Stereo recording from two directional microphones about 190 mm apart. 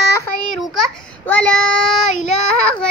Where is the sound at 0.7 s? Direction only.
5° left (ahead or behind).